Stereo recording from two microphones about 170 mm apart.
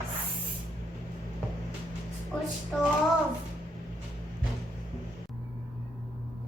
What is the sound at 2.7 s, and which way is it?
Music, 5° right (ahead or behind).